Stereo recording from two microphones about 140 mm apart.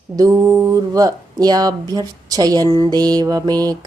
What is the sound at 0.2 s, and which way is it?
Speech, 25° right (ahead or behind).